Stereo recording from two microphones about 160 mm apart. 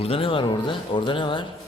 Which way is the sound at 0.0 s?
35° left (ahead or behind).